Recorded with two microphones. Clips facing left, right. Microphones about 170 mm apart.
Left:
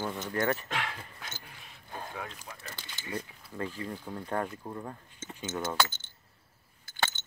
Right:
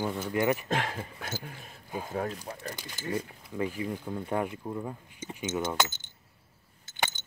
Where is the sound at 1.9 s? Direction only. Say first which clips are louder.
Right 8 dB; 10° right (ahead or behind).